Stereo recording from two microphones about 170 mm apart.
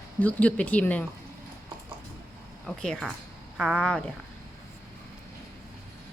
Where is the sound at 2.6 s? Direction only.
5° left (ahead or behind).